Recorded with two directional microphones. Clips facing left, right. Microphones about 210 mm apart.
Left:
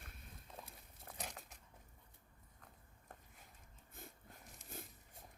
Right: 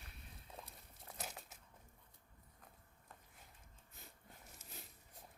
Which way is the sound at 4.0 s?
50° left (ahead or behind).